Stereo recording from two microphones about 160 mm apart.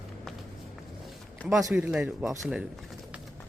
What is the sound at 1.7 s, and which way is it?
Speech, 5° right (ahead or behind).